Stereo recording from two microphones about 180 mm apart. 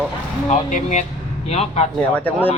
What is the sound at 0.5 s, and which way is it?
Speech, 40° left (ahead or behind).